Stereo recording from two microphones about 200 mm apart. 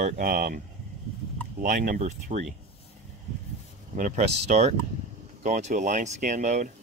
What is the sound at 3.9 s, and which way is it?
Speech, 35° right (ahead or behind).